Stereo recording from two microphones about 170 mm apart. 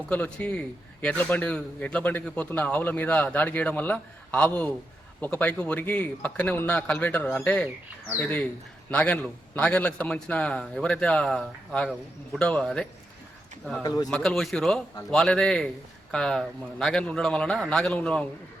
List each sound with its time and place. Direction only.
0.1 s a man's voice: 5° left (ahead or behind)
13.8 s speech: 20° left (ahead or behind)
14.1 s a man's voice: 5° left (ahead or behind)